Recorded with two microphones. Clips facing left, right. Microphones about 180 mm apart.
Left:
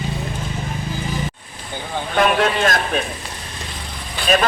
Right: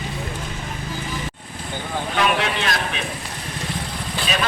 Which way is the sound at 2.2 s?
50° left (ahead or behind).